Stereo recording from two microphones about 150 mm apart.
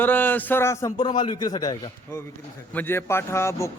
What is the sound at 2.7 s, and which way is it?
Speech, 15° left (ahead or behind).